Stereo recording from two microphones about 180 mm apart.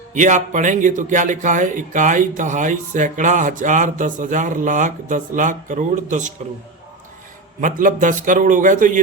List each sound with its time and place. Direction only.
0.1 s a man's voice: 45° right (ahead or behind)
7.6 s a man's voice: 45° right (ahead or behind)